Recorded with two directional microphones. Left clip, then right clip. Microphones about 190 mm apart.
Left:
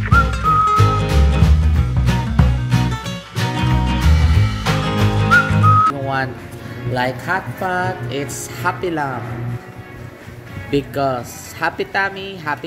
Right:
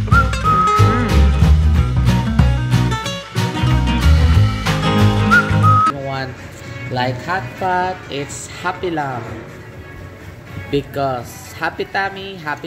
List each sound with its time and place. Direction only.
0.1 s music: centre (ahead or behind)
6.9 s a woman's voice: 5° left (ahead or behind)
10.7 s speech: 10° left (ahead or behind)